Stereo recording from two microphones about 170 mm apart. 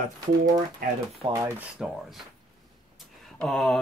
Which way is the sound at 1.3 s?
10° right (ahead or behind).